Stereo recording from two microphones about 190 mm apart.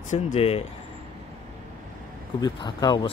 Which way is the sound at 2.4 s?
20° left (ahead or behind).